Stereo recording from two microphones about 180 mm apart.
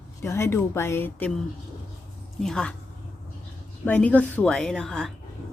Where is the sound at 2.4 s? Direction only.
5° left (ahead or behind).